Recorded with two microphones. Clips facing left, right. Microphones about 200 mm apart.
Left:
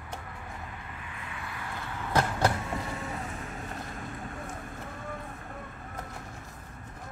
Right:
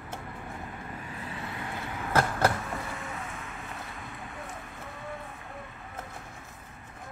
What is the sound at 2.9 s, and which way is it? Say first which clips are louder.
Vehicle: left 2 dB; 40° left (ahead or behind).